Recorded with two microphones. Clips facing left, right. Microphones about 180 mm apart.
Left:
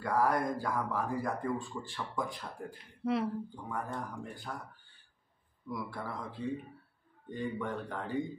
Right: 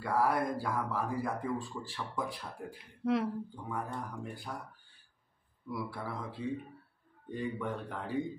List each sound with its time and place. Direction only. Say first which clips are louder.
0.0 s speech: even; 5° right (ahead or behind)
5.7 s speech: even; 5° right (ahead or behind)